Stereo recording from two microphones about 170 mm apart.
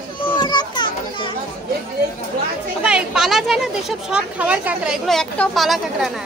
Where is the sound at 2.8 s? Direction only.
5° right (ahead or behind).